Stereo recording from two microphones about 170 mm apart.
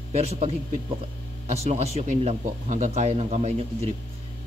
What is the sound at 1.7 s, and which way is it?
Speech, 40° right (ahead or behind).